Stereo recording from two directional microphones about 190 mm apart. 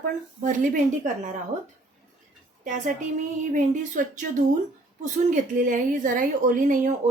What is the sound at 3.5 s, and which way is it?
A woman's voice, 40° right (ahead or behind).